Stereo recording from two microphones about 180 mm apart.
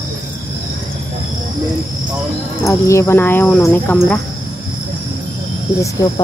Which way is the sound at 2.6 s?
15° left (ahead or behind).